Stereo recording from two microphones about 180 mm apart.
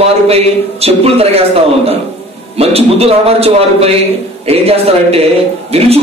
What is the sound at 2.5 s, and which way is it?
A man's voice, 35° right (ahead or behind).